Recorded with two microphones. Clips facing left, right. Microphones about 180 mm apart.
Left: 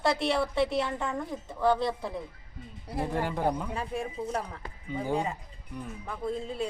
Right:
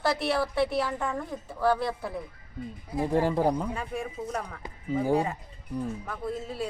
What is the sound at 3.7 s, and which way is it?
Speech, 30° left (ahead or behind).